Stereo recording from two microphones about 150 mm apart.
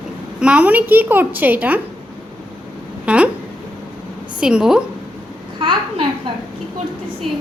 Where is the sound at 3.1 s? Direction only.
5° right (ahead or behind).